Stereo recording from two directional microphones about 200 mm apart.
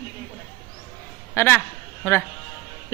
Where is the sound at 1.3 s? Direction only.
10° left (ahead or behind).